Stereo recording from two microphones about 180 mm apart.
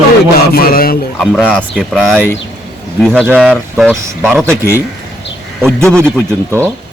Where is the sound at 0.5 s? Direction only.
55° left (ahead or behind).